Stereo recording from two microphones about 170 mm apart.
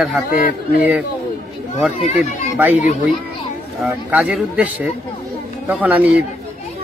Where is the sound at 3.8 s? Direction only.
5° right (ahead or behind).